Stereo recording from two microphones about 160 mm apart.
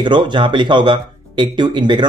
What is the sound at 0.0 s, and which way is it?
Speech, 30° right (ahead or behind).